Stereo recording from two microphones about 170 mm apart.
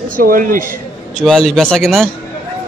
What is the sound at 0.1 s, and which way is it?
Speech, 55° right (ahead or behind).